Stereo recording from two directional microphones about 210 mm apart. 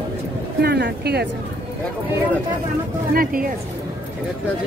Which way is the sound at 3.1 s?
45° right (ahead or behind).